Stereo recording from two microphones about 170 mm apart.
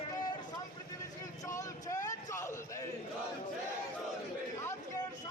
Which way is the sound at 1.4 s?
20° left (ahead or behind).